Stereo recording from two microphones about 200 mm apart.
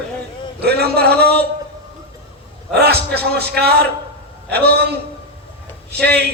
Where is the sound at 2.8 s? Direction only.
55° right (ahead or behind).